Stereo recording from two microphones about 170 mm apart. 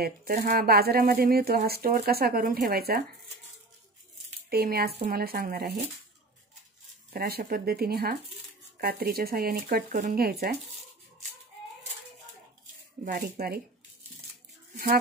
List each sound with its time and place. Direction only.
0.4 s speech: 60° right (ahead or behind)
4.5 s speech: 65° right (ahead or behind)
7.2 s speech: 65° right (ahead or behind)
13.0 s speech: 60° right (ahead or behind)